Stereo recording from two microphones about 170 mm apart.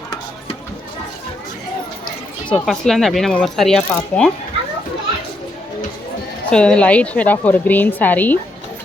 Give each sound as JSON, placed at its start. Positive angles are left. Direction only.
{"t": 2.6, "sound": "speech", "side_deg": 0}
{"t": 6.5, "sound": "a woman's voice", "side_deg": 5}